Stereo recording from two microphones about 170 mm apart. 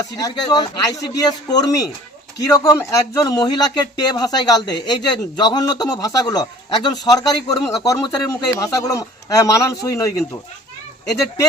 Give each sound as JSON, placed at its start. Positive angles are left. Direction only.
{"t": 0.0, "sound": "speech", "side_deg": 20}